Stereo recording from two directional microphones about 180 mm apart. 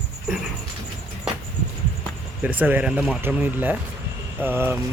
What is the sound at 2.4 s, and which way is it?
Speech, 10° right (ahead or behind).